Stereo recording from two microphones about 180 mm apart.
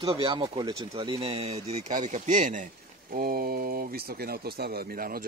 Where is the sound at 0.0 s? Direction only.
25° right (ahead or behind).